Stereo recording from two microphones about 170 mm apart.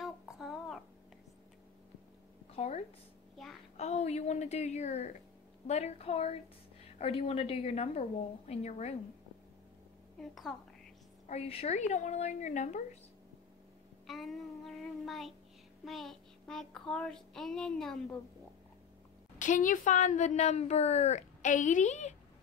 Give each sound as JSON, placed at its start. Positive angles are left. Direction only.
{"t": 0.0, "sound": "child singing", "side_deg": 0}
{"t": 2.5, "sound": "a sound", "side_deg": 40}
{"t": 3.7, "sound": "a woman's voice", "side_deg": 40}
{"t": 10.1, "sound": "a woman's voice", "side_deg": 0}
{"t": 11.2, "sound": "a woman's voice", "side_deg": 35}
{"t": 14.0, "sound": "child singing", "side_deg": 0}
{"t": 19.3, "sound": "a woman's voice", "side_deg": 50}